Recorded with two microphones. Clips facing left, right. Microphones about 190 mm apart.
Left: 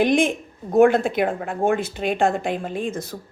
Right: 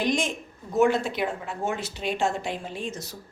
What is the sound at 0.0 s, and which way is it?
A woman's voice, 55° left (ahead or behind).